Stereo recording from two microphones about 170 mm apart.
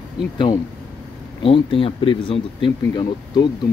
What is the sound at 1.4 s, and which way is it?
Speech, 30° left (ahead or behind).